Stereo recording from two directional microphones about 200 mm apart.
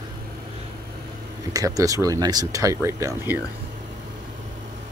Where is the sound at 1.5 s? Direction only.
15° right (ahead or behind).